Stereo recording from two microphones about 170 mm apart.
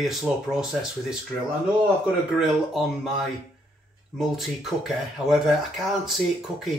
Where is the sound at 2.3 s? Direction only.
Centre (ahead or behind).